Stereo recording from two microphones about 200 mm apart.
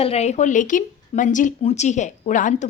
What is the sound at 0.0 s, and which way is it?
A woman's voice, 30° left (ahead or behind).